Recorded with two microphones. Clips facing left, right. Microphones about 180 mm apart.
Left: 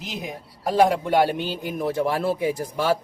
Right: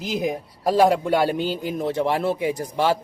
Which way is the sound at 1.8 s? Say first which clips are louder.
Even; 25° right (ahead or behind).